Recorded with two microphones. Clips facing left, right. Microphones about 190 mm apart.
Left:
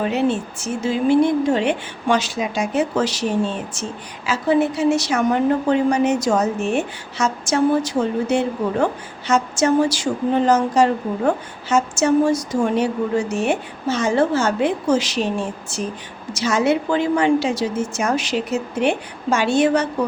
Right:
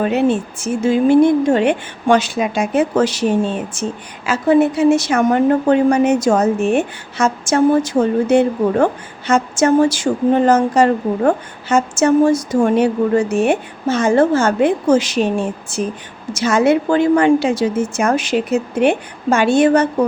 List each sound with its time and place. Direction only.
0.0 s a woman's voice: 55° right (ahead or behind)
4.3 s a woman's voice: 50° right (ahead or behind)
16.3 s a woman's voice: 50° right (ahead or behind)